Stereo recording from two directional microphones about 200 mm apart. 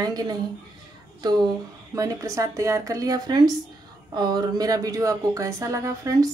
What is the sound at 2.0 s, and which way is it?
Speech, 15° right (ahead or behind).